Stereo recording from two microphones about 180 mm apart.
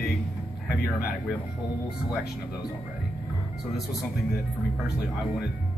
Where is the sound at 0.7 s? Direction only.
55° left (ahead or behind).